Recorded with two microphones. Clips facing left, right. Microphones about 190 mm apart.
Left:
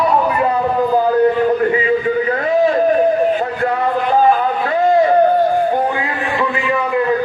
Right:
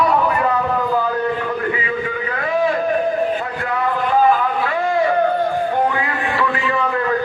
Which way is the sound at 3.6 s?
35° left (ahead or behind).